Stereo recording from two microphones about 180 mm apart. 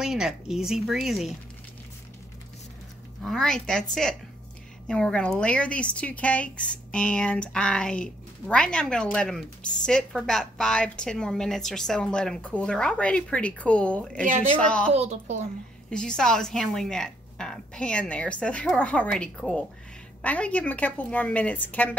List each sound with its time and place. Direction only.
0.0 s speech: 5° right (ahead or behind)
3.2 s speech: 5° left (ahead or behind)
14.9 s a child's voice: 35° right (ahead or behind)
15.9 s a woman's voice: 5° left (ahead or behind)